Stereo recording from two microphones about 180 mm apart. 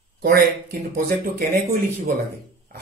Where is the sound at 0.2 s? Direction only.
55° right (ahead or behind).